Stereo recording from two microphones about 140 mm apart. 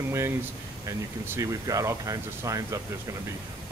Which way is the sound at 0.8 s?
20° right (ahead or behind).